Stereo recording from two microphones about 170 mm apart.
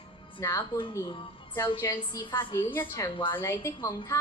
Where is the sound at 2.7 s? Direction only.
10° left (ahead or behind).